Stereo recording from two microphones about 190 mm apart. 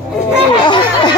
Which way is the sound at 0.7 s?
25° left (ahead or behind).